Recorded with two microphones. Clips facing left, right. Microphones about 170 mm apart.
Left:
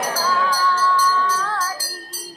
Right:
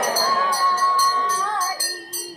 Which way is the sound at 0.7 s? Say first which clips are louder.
Left 3 dB; 10° right (ahead or behind).